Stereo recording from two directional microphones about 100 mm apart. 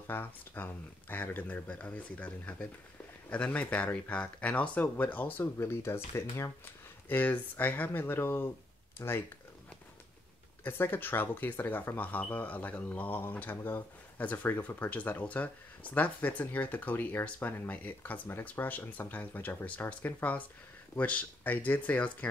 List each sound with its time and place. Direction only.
0.0 s speech: 20° left (ahead or behind)
10.6 s speech: 20° left (ahead or behind)